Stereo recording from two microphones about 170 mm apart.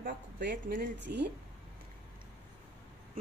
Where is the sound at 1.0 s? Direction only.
90° right.